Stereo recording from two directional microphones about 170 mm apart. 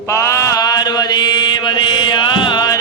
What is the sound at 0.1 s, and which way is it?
Chant, 15° left (ahead or behind).